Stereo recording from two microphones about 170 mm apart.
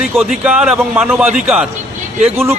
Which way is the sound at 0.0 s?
5° right (ahead or behind).